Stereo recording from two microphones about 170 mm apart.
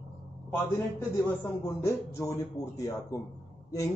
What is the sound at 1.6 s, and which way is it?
A man's voice, 15° left (ahead or behind).